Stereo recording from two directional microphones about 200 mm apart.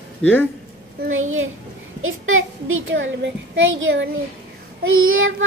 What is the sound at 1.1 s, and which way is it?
A child's voice, 90° right.